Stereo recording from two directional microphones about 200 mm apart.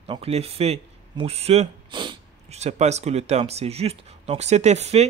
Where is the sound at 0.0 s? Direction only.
30° right (ahead or behind).